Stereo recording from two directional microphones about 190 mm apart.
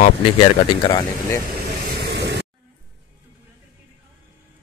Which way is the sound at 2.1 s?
60° right (ahead or behind).